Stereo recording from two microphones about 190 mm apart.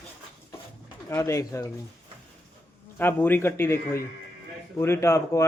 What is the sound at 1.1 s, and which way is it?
Speech, 15° left (ahead or behind).